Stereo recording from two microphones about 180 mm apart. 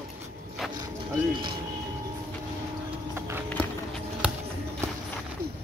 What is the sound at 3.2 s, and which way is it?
Clip-clop, 15° right (ahead or behind).